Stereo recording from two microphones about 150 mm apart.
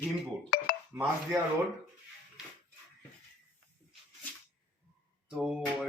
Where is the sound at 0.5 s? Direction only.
65° left (ahead or behind).